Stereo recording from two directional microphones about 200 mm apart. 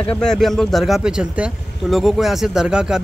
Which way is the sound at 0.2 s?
Centre (ahead or behind).